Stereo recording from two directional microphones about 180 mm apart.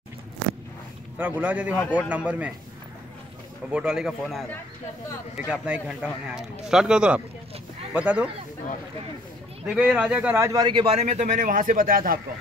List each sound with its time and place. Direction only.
1.1 s speech: 10° right (ahead or behind)
3.7 s speech: 5° right (ahead or behind)
9.7 s a man's voice: 5° right (ahead or behind); by 12.2 s 50° right (ahead or behind)